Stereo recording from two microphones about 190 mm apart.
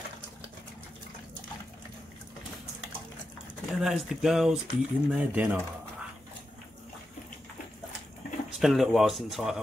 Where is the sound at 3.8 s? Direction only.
Centre (ahead or behind).